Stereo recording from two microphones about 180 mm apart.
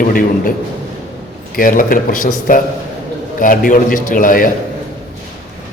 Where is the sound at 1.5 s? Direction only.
50° left (ahead or behind).